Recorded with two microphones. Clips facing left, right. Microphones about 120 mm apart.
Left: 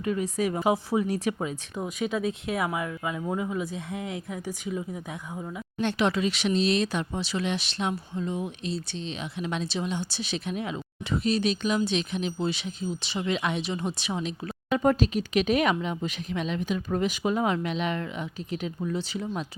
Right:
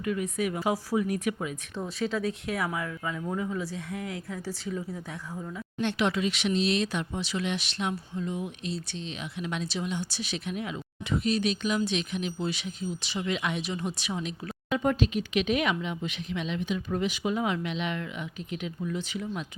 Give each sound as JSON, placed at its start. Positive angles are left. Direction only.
{"t": 0.0, "sound": "speech", "side_deg": 30}
{"t": 1.7, "sound": "speech", "side_deg": 15}
{"t": 5.8, "sound": "speech", "side_deg": 40}
{"t": 14.7, "sound": "speech", "side_deg": 40}